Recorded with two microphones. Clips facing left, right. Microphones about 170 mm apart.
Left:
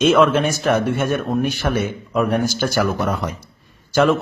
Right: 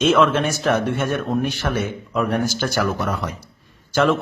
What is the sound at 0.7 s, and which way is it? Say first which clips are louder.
Speech: left 1 dB; 10° left (ahead or behind).